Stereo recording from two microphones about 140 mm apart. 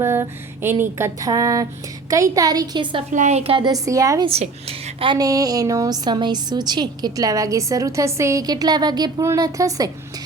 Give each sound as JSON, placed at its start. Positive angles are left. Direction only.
{"t": 0.0, "sound": "a sound", "side_deg": -20}
{"t": 1.3, "sound": "a woman's voice", "side_deg": -25}
{"t": 3.1, "sound": "a woman's voice", "side_deg": -60}
{"t": 3.7, "sound": "a woman's voice", "side_deg": -25}